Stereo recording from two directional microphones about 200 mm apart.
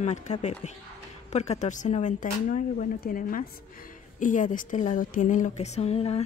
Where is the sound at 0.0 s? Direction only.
35° left (ahead or behind).